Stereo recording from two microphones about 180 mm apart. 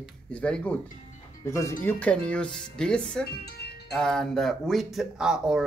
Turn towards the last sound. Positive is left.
turn(degrees=-5)  # may be behind; listen again after turning